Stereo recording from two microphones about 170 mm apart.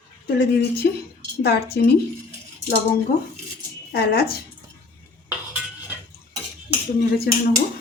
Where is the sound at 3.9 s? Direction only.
70° left (ahead or behind).